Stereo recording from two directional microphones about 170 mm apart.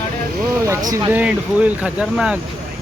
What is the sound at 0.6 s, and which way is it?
Speech, 20° right (ahead or behind).